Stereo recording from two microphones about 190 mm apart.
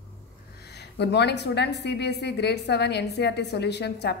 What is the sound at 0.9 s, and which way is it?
A woman's voice, 60° left (ahead or behind).